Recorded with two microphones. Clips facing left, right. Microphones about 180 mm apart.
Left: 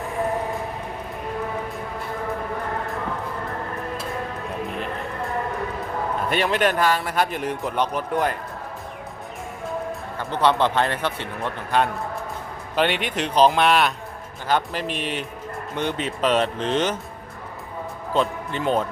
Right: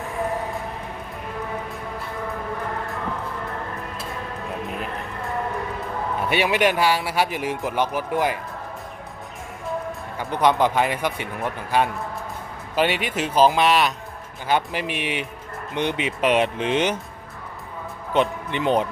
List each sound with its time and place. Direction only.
0.0 s music: centre (ahead or behind)
6.2 s a man's voice: 10° right (ahead or behind)
10.3 s a man's voice: 10° right (ahead or behind)
18.1 s speech: 20° right (ahead or behind)